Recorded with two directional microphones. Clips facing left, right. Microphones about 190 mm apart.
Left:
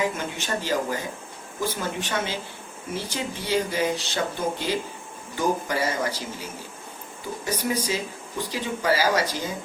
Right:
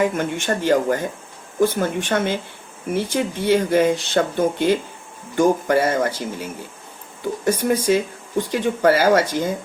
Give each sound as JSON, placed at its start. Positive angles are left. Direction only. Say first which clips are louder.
{"t": 0.0, "sound": "speech", "louder": "right 7 dB", "side_deg": -55}